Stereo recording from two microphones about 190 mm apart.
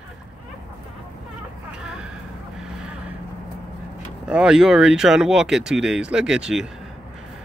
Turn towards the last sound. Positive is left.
turn(degrees=-5)  # may be behind; listen again after turning